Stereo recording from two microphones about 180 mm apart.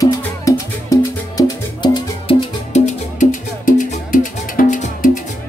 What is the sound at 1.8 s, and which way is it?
Music, 30° left (ahead or behind).